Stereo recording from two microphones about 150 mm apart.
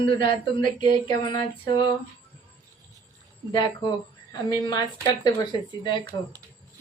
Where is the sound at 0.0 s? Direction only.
35° left (ahead or behind).